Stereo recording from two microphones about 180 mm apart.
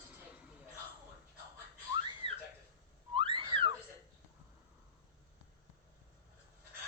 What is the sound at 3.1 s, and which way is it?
Whistling, 30° right (ahead or behind).